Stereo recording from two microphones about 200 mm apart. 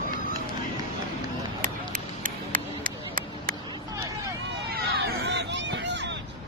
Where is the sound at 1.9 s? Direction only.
45° right (ahead or behind).